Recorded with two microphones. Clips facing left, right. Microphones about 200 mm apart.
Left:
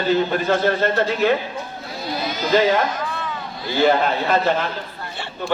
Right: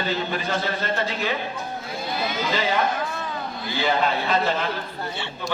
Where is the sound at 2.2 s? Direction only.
40° left (ahead or behind).